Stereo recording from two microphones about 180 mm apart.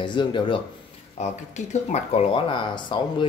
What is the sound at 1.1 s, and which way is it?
Speech, 40° left (ahead or behind).